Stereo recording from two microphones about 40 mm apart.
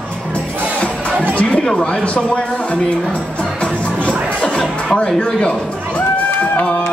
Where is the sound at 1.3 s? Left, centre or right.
Left.